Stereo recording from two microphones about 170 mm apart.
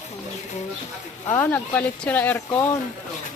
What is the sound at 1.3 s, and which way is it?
Speech, 10° left (ahead or behind).